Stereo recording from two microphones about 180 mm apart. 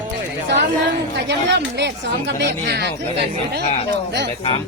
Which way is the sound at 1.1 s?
75° right (ahead or behind).